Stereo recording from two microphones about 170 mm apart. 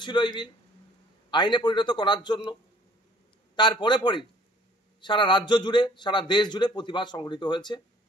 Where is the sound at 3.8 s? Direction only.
25° left (ahead or behind).